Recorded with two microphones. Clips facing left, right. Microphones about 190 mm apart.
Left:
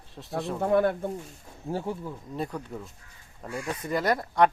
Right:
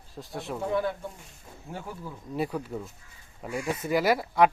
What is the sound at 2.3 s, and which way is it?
Speech, 5° right (ahead or behind).